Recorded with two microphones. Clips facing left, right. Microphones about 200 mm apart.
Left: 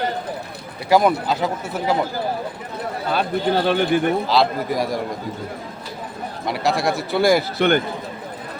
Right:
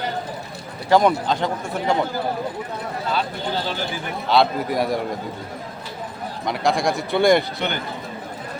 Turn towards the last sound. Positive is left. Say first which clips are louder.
# left 9 dB
turn(degrees=55)  # may be behind; listen again after turning